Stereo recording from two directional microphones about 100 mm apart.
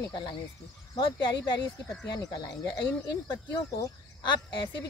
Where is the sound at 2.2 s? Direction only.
40° left (ahead or behind).